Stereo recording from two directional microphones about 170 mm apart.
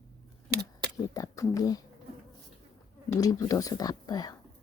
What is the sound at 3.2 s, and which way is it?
Speech, 20° left (ahead or behind).